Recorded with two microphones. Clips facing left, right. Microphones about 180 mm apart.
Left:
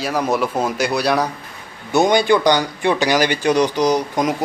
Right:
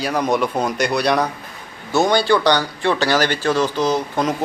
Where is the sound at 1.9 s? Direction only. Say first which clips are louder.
Left 2 dB; 20° left (ahead or behind).